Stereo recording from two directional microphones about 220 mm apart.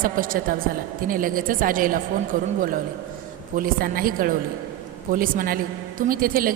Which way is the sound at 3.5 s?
40° right (ahead or behind).